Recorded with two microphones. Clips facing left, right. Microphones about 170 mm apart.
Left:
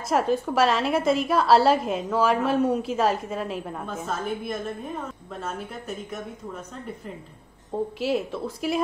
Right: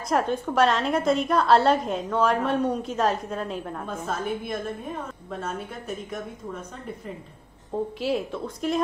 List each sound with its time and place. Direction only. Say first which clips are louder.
0.1 s a woman's voice: left 1 dB; centre (ahead or behind)
7.7 s a woman's voice: left 1 dB; centre (ahead or behind)